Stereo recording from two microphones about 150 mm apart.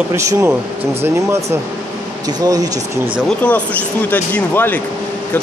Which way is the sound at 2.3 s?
25° right (ahead or behind).